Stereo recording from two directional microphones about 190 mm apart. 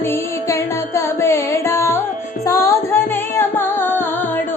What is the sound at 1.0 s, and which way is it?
Carnatic music, 15° left (ahead or behind).